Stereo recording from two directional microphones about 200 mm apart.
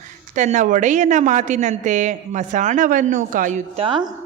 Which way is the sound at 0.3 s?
40° right (ahead or behind).